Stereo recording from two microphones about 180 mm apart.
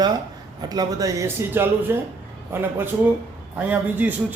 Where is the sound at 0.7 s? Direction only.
20° right (ahead or behind).